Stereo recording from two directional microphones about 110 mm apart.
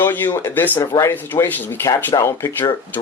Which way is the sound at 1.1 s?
20° left (ahead or behind).